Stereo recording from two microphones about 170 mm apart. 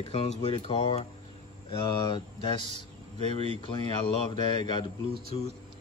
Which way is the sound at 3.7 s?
25° left (ahead or behind).